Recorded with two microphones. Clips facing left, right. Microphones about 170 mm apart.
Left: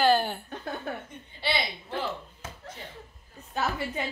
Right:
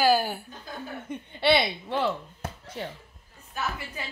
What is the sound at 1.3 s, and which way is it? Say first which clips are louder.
Speech: right 8 dB; 65° right (ahead or behind).